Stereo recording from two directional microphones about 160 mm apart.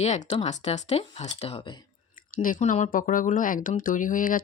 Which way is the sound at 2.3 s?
55° left (ahead or behind).